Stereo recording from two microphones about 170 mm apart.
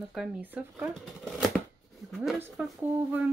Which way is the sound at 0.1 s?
5° right (ahead or behind).